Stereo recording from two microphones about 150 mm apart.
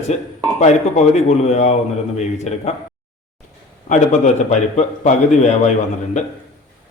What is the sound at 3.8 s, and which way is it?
A man's voice, 55° left (ahead or behind).